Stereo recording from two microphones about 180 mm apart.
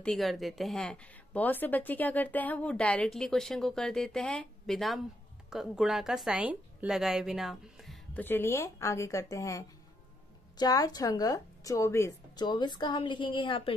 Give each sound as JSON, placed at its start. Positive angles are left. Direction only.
{"t": 0.0, "sound": "a woman's voice", "side_deg": 0}